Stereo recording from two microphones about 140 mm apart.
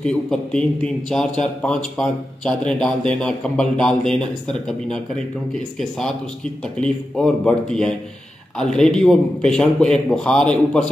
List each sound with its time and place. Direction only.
0.0 s a man's voice: 5° left (ahead or behind)